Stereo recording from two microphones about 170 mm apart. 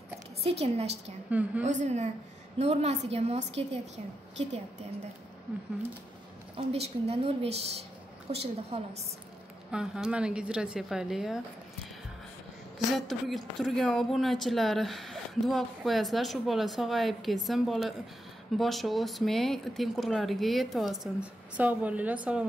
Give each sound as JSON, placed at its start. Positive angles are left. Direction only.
{"t": 0.4, "sound": "a woman's voice", "side_deg": -35}
{"t": 5.5, "sound": "speech", "side_deg": -5}
{"t": 6.5, "sound": "a woman's voice", "side_deg": -35}
{"t": 9.7, "sound": "speech", "side_deg": -5}
{"t": 12.7, "sound": "speech", "side_deg": 0}